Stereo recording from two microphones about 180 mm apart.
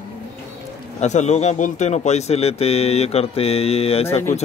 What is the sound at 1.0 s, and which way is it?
Speech, 40° left (ahead or behind).